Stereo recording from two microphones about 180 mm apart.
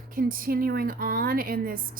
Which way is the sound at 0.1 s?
50° right (ahead or behind).